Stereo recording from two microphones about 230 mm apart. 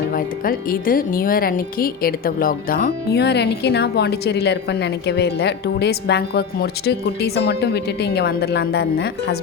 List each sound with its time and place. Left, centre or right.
0.1 s speech: left